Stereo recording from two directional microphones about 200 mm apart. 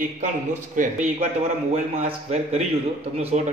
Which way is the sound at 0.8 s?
40° right (ahead or behind).